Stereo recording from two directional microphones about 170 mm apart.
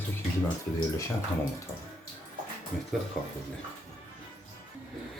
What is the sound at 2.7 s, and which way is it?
Speech, centre (ahead or behind).